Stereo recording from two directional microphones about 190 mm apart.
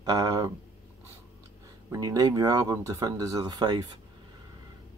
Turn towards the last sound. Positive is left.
turn(degrees=-20)  # may be behind; listen again after turning